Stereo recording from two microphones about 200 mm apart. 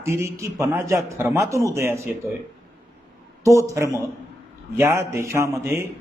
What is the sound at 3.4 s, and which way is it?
A man's voice, 15° right (ahead or behind).